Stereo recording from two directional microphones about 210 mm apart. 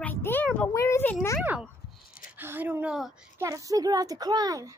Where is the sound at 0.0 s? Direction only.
10° left (ahead or behind).